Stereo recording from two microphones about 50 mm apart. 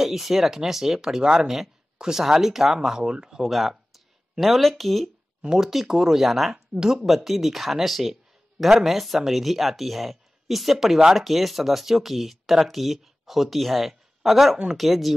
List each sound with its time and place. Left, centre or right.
0.0 s speech: centre
5.4 s speech: centre